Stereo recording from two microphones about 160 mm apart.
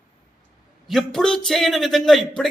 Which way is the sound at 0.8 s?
Centre (ahead or behind).